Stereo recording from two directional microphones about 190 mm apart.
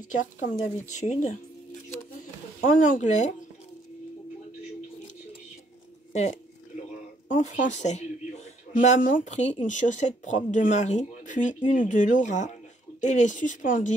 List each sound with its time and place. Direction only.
0.1 s speech: 40° left (ahead or behind)
7.3 s speech: 40° left (ahead or behind)